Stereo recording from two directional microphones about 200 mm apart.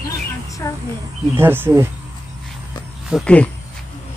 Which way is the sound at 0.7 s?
15° left (ahead or behind).